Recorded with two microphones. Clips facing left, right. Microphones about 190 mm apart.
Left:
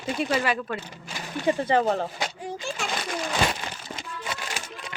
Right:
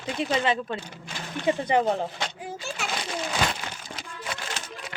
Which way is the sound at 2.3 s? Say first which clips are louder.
Left 2 dB; 5° right (ahead or behind).